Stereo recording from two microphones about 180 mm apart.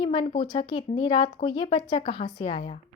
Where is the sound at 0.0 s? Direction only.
25° left (ahead or behind).